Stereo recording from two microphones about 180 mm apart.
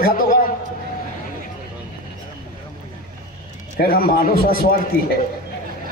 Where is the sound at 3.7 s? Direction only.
55° left (ahead or behind).